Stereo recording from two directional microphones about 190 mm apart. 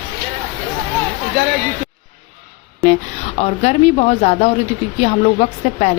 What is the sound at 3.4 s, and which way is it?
Speech, 35° left (ahead or behind).